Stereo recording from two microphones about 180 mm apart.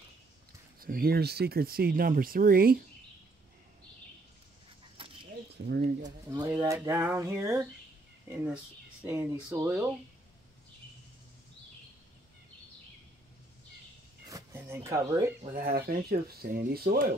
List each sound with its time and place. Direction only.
0.7 s speech: 55° right (ahead or behind)
4.9 s bird: 30° right (ahead or behind)
5.7 s speech: 65° right (ahead or behind)
6.0 s speech: 20° right (ahead or behind)
6.6 s a sound: 10° right (ahead or behind)
9.0 s a sound: 10° right (ahead or behind)
14.3 s a sound: 15° right (ahead or behind)
14.9 s speech: 20° right (ahead or behind)
15.5 s speech: 55° right (ahead or behind)